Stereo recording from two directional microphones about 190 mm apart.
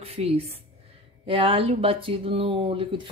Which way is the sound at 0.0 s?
30° right (ahead or behind).